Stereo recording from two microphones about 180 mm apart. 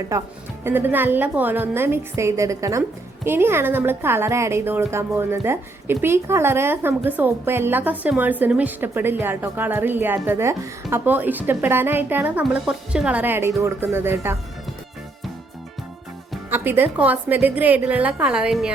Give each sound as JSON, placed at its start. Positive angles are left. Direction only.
{"t": 0.1, "sound": "a woman's voice", "side_deg": -15}
{"t": 16.5, "sound": "a woman's voice", "side_deg": -10}